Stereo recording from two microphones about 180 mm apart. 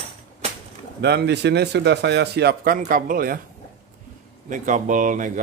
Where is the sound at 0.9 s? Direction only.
65° right (ahead or behind).